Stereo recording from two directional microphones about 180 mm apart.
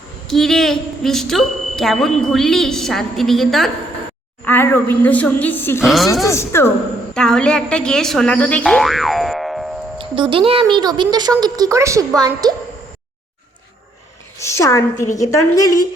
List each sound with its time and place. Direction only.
0.3 s a woman's voice: centre (ahead or behind)
5.8 s speech: centre (ahead or behind)
6.2 s a woman's voice: 15° left (ahead or behind)
10.0 s speech: 30° right (ahead or behind)
14.3 s a woman's voice: 15° left (ahead or behind)